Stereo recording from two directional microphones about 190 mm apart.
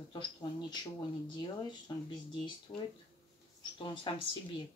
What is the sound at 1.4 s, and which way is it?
Speech, 20° left (ahead or behind).